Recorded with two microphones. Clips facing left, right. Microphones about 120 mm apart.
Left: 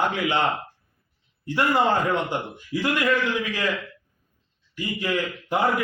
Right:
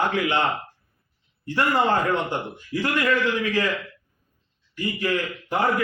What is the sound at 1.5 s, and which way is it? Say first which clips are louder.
Speech: even; 15° left (ahead or behind).